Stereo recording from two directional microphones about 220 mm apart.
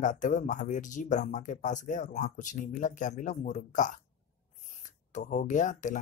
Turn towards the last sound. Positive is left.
turn(degrees=35)  # may be behind; listen again after turning